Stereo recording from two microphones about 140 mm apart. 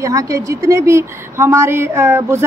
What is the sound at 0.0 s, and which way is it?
A woman's voice, 25° right (ahead or behind).